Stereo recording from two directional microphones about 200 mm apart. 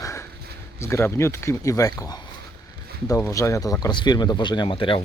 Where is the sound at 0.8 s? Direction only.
15° left (ahead or behind).